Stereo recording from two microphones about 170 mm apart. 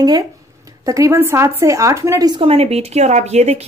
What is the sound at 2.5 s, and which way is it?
Speech, 40° right (ahead or behind).